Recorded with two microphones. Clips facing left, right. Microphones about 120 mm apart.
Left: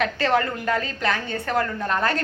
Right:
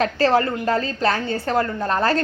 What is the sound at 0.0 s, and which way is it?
A woman's voice, 30° right (ahead or behind).